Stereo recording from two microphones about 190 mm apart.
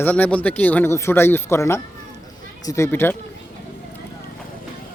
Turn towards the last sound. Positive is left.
turn(degrees=10)  # may be behind; listen again after turning